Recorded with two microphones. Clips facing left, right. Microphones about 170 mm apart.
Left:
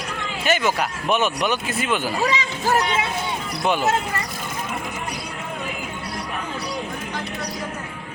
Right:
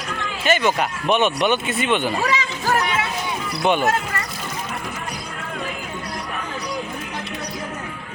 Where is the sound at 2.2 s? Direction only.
20° left (ahead or behind).